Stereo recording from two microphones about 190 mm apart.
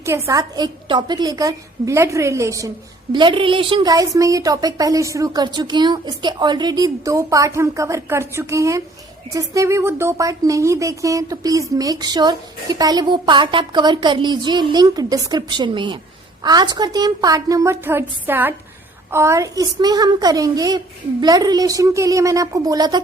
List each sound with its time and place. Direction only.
0.0 s a woman's voice: 15° right (ahead or behind)